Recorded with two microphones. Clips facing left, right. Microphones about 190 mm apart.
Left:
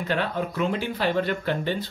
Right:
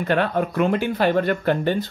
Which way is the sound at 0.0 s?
55° right (ahead or behind).